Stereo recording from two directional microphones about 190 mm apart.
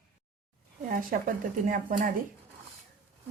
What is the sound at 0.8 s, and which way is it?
Speech, 45° right (ahead or behind).